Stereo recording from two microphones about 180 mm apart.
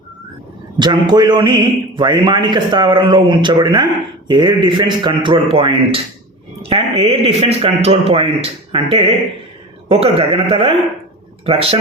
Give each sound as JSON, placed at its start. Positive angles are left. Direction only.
{"t": 0.8, "sound": "a man's voice", "side_deg": -25}
{"t": 11.4, "sound": "a man's voice", "side_deg": -35}